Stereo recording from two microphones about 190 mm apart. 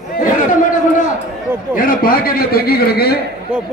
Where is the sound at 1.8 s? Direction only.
50° left (ahead or behind).